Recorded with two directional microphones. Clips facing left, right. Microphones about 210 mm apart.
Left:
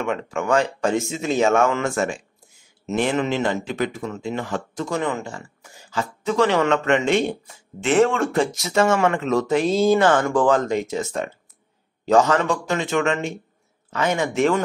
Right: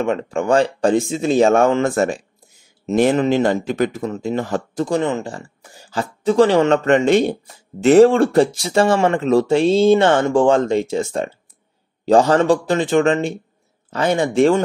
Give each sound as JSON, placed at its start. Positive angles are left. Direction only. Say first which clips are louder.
{"t": 0.0, "sound": "speech", "louder": "right 5 dB", "side_deg": -30}